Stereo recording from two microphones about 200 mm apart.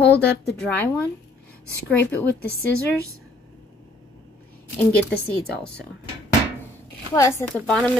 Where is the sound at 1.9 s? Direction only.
10° left (ahead or behind).